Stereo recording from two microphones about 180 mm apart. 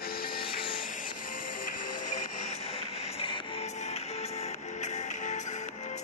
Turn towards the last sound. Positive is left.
turn(degrees=40)  # may be behind; listen again after turning